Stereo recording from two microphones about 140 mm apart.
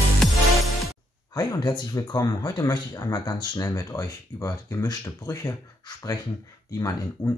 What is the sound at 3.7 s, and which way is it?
Speech, 20° left (ahead or behind).